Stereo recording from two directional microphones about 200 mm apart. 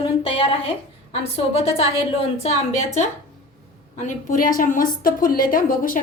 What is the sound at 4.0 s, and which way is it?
A woman's voice, 40° left (ahead or behind).